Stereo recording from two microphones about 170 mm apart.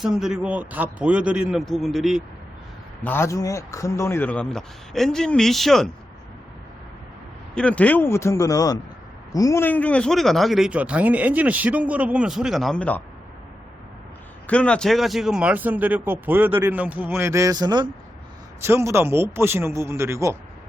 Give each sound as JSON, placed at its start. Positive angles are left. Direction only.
{"t": 0.0, "sound": "speech", "side_deg": -5}
{"t": 3.0, "sound": "speech", "side_deg": 10}
{"t": 7.5, "sound": "speech", "side_deg": 5}
{"t": 14.4, "sound": "speech", "side_deg": 5}